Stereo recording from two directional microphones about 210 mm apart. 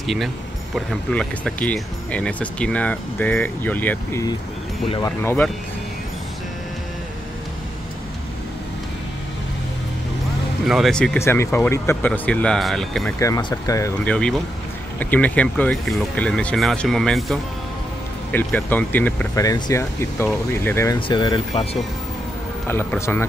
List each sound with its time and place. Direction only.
0.0 s speech: centre (ahead or behind)
10.7 s speech: centre (ahead or behind)
13.2 s speech: 20° left (ahead or behind)
22.7 s speech: 10° left (ahead or behind)